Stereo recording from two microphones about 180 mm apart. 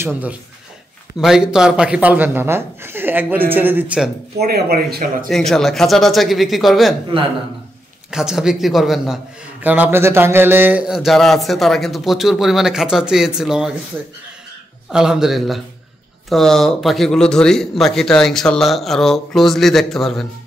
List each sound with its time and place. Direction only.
0.0 s speech: 10° right (ahead or behind)
4.4 s speech: 60° right (ahead or behind)
5.3 s a man's voice: centre (ahead or behind)
8.1 s a man's voice: 5° right (ahead or behind)
14.9 s a man's voice: 5° right (ahead or behind)